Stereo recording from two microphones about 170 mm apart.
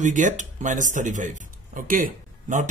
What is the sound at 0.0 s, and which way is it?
Speech, 45° right (ahead or behind).